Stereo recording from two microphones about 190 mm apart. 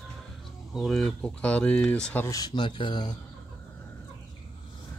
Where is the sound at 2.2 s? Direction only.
20° left (ahead or behind).